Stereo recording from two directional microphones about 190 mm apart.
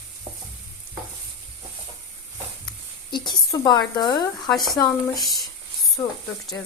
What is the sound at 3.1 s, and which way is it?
Speech, 20° left (ahead or behind).